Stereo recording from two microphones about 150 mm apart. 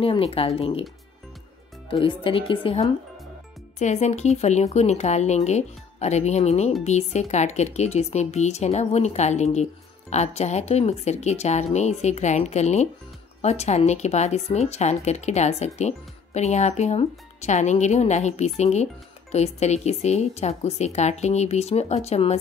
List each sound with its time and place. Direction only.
0.0 s speech: 40° left (ahead or behind)
2.0 s speech: 35° left (ahead or behind)
3.8 s speech: 50° left (ahead or behind)